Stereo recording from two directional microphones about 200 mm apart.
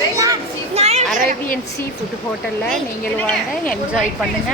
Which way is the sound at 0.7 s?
30° right (ahead or behind).